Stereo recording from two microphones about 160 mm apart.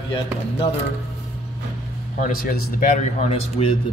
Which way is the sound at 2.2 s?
65° left (ahead or behind).